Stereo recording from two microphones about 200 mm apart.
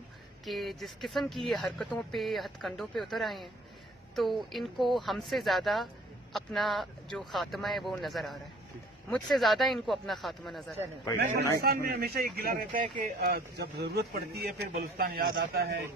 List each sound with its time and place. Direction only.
0.5 s speech: centre (ahead or behind)
11.2 s speech: 50° right (ahead or behind)